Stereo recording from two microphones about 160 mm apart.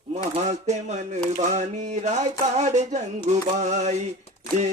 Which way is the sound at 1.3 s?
45° right (ahead or behind).